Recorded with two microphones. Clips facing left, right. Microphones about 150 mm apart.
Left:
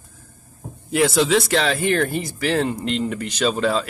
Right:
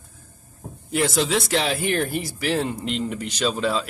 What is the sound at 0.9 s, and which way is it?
Speech, centre (ahead or behind).